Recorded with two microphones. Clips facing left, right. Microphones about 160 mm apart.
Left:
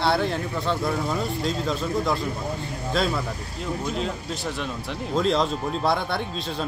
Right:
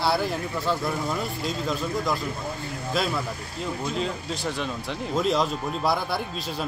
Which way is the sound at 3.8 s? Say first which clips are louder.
Even; centre (ahead or behind).